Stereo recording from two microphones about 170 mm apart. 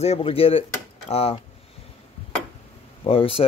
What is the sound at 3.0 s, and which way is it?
Speech, 35° left (ahead or behind).